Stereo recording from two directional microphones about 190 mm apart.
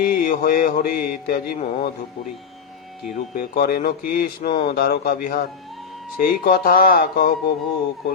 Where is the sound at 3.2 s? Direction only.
50° left (ahead or behind).